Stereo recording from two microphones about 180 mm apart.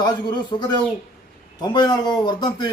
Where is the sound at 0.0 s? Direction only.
25° left (ahead or behind).